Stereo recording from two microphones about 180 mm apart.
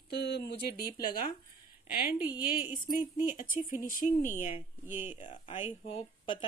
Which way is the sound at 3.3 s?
50° left (ahead or behind).